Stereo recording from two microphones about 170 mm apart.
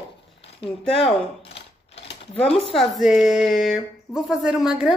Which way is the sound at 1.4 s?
35° left (ahead or behind).